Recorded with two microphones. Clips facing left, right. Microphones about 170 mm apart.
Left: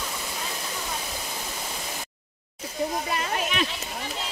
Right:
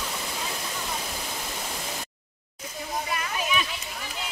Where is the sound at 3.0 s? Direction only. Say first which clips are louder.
Left 3 dB; 30° left (ahead or behind).